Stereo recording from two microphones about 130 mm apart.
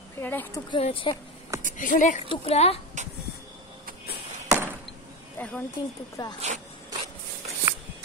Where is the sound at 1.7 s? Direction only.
85° left.